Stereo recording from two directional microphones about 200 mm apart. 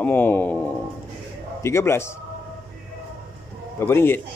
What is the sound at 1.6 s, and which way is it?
Speech, 15° left (ahead or behind).